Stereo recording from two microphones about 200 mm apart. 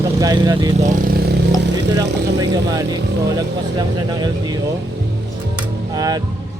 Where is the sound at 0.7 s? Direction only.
35° right (ahead or behind).